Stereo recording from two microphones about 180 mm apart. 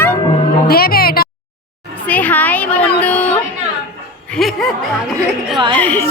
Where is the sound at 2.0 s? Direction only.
10° left (ahead or behind).